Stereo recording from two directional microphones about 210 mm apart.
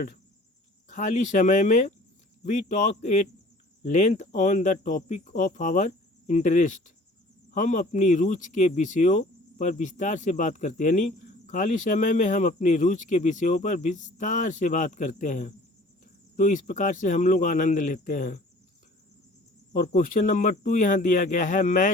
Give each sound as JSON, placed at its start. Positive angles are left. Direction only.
{"t": 0.9, "sound": "speech", "side_deg": 35}
{"t": 19.7, "sound": "speech", "side_deg": 40}